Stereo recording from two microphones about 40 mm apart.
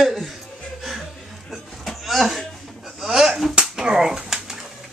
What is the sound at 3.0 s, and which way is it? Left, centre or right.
Speech, centre.